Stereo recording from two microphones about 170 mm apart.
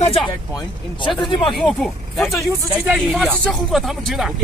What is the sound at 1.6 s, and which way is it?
Speech, 5° left (ahead or behind).